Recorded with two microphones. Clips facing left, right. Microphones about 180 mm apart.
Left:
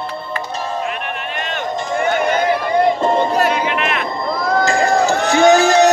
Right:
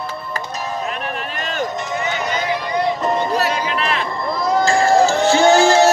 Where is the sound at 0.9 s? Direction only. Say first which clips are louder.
Left 1 dB; 35° right (ahead or behind).